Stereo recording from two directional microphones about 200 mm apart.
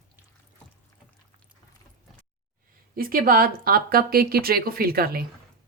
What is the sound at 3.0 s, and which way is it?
A woman's voice, 45° right (ahead or behind).